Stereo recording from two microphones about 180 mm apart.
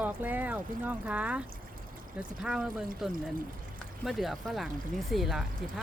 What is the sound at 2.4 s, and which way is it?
Speech, 5° right (ahead or behind).